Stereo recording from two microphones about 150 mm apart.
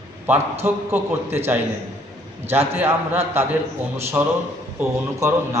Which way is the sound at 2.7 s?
15° right (ahead or behind).